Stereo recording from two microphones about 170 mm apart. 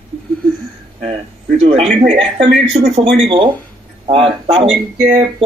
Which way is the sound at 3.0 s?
30° right (ahead or behind).